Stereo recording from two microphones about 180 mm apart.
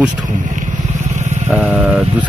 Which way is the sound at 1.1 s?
40° right (ahead or behind).